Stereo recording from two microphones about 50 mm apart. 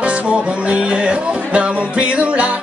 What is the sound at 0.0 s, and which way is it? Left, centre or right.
Music, right.